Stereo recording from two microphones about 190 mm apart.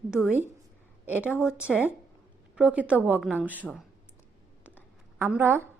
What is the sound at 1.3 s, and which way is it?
Speech, 15° left (ahead or behind).